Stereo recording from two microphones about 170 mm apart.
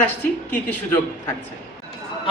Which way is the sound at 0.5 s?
10° left (ahead or behind).